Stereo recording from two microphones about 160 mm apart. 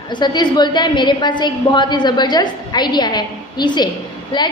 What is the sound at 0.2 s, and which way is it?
A woman's voice, 25° left (ahead or behind).